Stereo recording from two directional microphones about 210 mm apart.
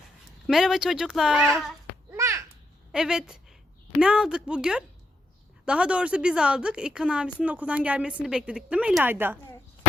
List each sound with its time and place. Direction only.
0.4 s a woman's voice: centre (ahead or behind)
2.1 s a sound: 15° right (ahead or behind)
2.9 s a woman's voice: 5° right (ahead or behind)